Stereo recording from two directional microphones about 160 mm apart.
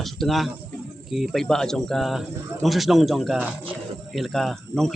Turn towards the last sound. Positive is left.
turn(degrees=0)  # may be behind; listen again after turning